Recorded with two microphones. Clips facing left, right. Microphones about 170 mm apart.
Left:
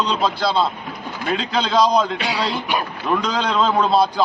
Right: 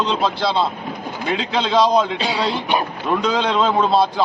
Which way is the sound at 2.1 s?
25° right (ahead or behind).